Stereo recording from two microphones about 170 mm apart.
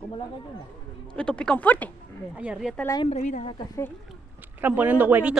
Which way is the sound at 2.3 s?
5° right (ahead or behind).